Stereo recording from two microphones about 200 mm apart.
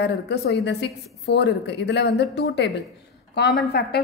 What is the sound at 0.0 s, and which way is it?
A woman's voice, 55° left (ahead or behind).